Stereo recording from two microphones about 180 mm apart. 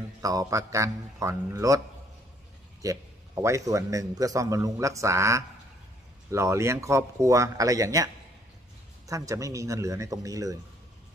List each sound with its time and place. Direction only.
0.2 s a man's voice: 20° right (ahead or behind)
2.8 s a man's voice: 20° right (ahead or behind)